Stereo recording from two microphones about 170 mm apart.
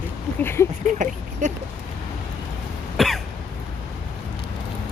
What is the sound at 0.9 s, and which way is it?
Speech, 45° right (ahead or behind).